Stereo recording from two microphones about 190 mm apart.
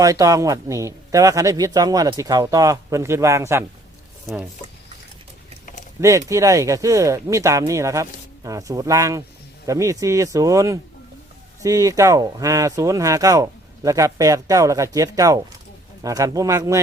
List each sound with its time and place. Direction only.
0.0 s speech: 20° right (ahead or behind)
6.0 s speech: 15° right (ahead or behind)